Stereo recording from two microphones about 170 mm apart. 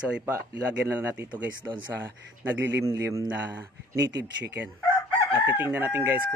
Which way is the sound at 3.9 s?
90° right.